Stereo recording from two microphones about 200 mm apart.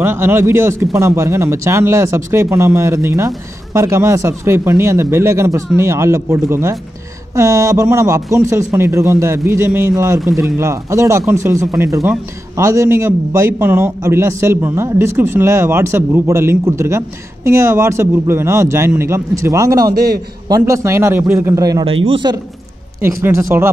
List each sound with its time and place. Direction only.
0.0 s a man's voice: 10° right (ahead or behind)
19.9 s a man's voice: 50° right (ahead or behind)
20.4 s a man's voice: 15° right (ahead or behind)